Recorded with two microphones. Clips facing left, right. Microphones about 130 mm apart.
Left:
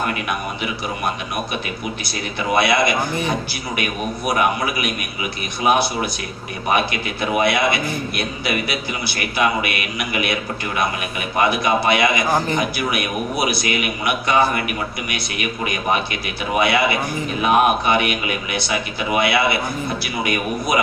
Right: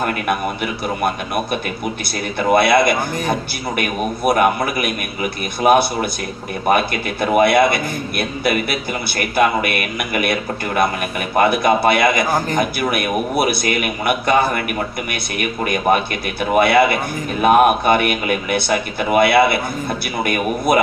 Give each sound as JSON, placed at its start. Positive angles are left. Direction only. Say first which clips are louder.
{"t": 2.6, "sound": "a man's voice", "louder": "right 2 dB", "side_deg": -55}
{"t": 11.4, "sound": "a man's voice", "louder": "right 3 dB", "side_deg": -55}